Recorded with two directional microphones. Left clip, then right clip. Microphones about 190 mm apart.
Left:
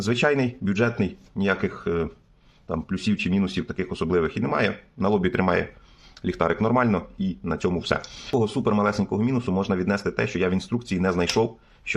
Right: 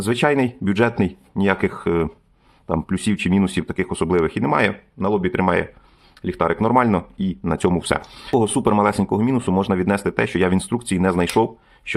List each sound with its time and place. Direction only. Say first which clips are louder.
0.0 s speech: right 4 dB; 25° right (ahead or behind)
4.9 s speech: right 2 dB; 10° right (ahead or behind)